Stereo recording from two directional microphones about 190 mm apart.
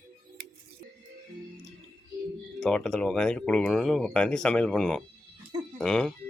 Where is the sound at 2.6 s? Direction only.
5° left (ahead or behind).